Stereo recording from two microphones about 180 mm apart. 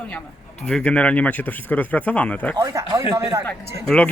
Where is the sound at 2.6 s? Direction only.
15° right (ahead or behind).